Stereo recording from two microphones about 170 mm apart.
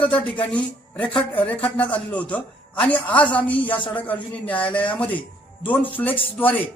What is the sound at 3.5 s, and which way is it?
Speech, 30° left (ahead or behind).